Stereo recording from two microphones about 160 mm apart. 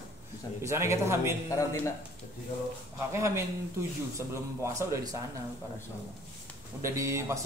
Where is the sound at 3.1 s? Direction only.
15° right (ahead or behind).